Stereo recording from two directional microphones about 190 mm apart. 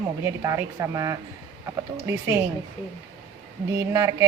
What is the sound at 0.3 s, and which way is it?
Speech, 15° right (ahead or behind).